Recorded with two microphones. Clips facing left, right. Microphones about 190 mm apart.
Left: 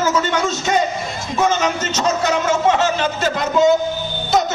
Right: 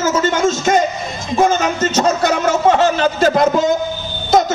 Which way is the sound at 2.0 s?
50° right (ahead or behind).